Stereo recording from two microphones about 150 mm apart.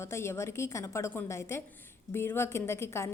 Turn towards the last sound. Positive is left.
turn(degrees=15)  # may be behind; listen again after turning